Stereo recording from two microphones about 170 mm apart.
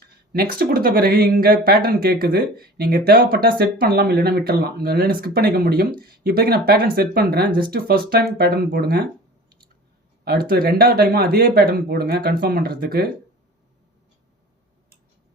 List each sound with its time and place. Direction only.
0.3 s speech: 60° right (ahead or behind)
10.2 s speech: 60° right (ahead or behind)